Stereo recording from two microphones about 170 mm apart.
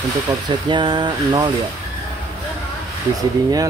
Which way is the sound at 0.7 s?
25° right (ahead or behind).